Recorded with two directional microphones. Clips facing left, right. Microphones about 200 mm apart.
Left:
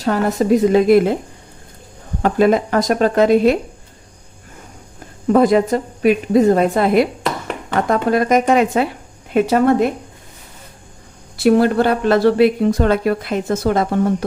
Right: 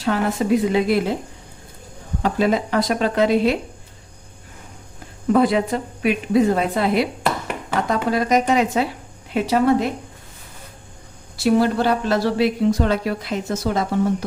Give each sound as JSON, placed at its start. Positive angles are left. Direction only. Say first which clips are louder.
{"t": 0.0, "sound": "a woman's voice", "louder": "left 4 dB", "side_deg": 40}
{"t": 2.2, "sound": "a woman's voice", "louder": "left 5 dB", "side_deg": 50}
{"t": 5.3, "sound": "a woman's voice", "louder": "left 4 dB", "side_deg": 45}
{"t": 11.3, "sound": "a woman's voice", "louder": "left 4 dB", "side_deg": 55}